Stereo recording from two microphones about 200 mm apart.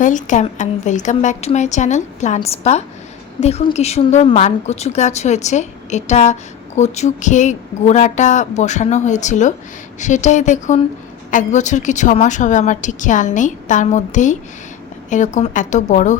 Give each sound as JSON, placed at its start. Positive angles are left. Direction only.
{"t": 0.0, "sound": "a woman's voice", "side_deg": 40}